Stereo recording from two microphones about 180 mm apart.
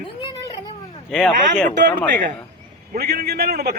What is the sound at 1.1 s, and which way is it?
Speech, centre (ahead or behind).